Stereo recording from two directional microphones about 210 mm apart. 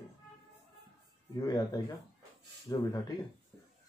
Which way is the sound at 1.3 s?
15° left (ahead or behind).